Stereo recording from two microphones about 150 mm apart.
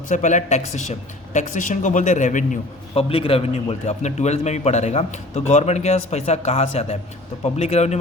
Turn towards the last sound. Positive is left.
turn(degrees=45)  # may be behind; listen again after turning